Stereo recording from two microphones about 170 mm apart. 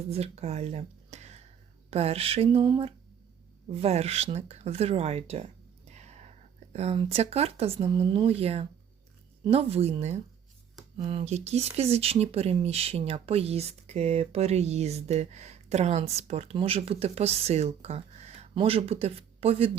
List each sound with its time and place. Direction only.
0.1 s speech: 35° right (ahead or behind)
5.9 s whispering: 40° right (ahead or behind)
6.7 s speech: 35° right (ahead or behind)